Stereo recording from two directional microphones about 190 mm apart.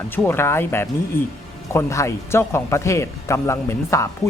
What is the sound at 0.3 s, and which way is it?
Speech, 10° left (ahead or behind).